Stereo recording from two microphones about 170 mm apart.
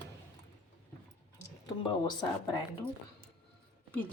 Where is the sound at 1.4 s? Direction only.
25° left (ahead or behind).